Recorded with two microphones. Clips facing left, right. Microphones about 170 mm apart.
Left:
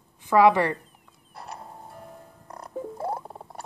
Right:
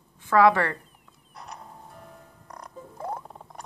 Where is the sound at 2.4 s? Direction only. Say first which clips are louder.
Left 9 dB; 30° left (ahead or behind).